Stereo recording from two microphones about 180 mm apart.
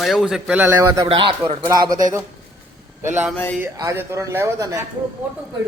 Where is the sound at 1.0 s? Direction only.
30° right (ahead or behind).